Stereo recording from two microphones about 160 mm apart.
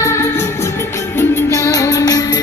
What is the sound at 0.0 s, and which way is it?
Music, 15° left (ahead or behind).